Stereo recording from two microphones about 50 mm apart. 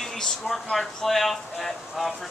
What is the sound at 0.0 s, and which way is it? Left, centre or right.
Speech, centre.